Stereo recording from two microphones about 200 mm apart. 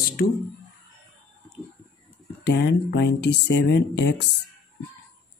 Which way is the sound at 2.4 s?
55° left (ahead or behind).